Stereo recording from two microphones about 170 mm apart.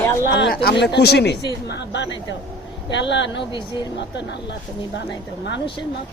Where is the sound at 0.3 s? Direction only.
70° left (ahead or behind).